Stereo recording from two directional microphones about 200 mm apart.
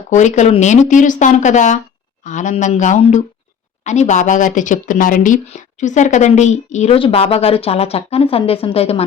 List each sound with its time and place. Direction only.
0.1 s a woman's voice: 35° left (ahead or behind)